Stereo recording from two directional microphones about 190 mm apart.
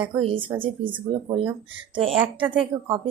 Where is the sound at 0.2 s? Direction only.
30° right (ahead or behind).